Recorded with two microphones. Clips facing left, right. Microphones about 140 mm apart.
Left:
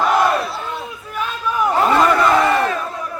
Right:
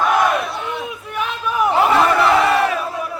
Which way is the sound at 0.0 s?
Centre (ahead or behind).